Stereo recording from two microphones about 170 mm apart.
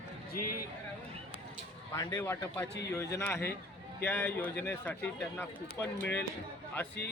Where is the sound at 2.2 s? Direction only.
10° left (ahead or behind).